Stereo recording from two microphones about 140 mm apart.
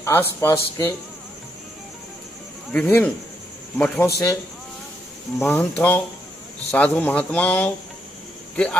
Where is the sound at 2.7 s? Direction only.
10° left (ahead or behind).